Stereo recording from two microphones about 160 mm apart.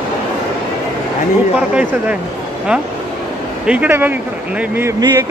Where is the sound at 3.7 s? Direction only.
10° right (ahead or behind).